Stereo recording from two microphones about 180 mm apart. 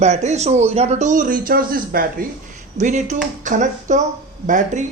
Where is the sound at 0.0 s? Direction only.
40° right (ahead or behind).